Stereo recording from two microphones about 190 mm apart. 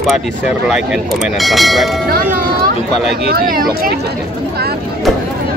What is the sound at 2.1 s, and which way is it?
Speech, 50° right (ahead or behind).